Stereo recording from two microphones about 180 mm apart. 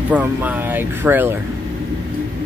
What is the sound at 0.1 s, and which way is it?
Speech, 10° right (ahead or behind).